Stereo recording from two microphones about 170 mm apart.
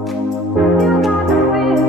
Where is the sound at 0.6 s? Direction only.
Centre (ahead or behind).